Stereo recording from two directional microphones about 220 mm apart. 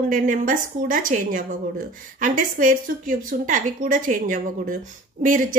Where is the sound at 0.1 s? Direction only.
35° right (ahead or behind).